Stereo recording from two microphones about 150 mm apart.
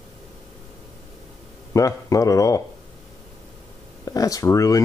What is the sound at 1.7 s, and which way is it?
Speech, 20° left (ahead or behind).